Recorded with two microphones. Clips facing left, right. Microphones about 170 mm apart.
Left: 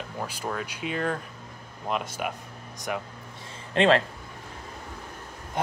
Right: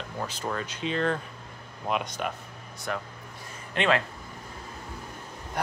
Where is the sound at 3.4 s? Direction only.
30° left (ahead or behind).